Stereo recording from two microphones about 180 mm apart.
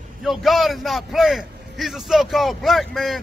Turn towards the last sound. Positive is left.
turn(degrees=0)  # may be behind; listen again after turning